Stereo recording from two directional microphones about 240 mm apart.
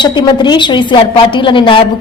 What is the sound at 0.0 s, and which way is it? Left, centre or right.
A man's voice, centre.